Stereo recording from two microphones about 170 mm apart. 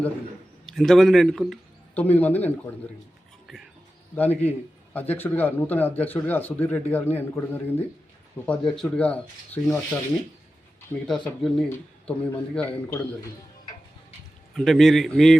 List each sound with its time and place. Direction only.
0.6 s a man's voice: centre (ahead or behind)
3.4 s music: centre (ahead or behind)
4.2 s speech: 10° left (ahead or behind)
11.0 s a man's voice: centre (ahead or behind)
14.5 s a man's voice: centre (ahead or behind)